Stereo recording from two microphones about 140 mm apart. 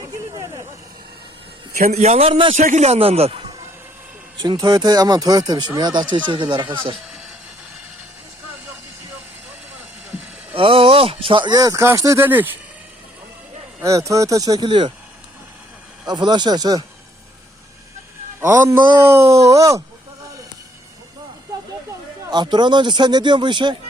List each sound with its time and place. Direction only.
1.9 s a man's voice: 50° right (ahead or behind)
4.4 s speech: 30° right (ahead or behind)
10.5 s speech: 40° right (ahead or behind); by 12.5 s 15° right (ahead or behind)
13.8 s speech: 25° right (ahead or behind)
16.0 s speech: 30° right (ahead or behind)
18.3 s speech: 15° right (ahead or behind)
22.3 s speech: 30° right (ahead or behind)